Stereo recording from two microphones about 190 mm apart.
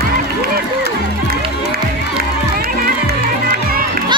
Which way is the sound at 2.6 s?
50° right (ahead or behind).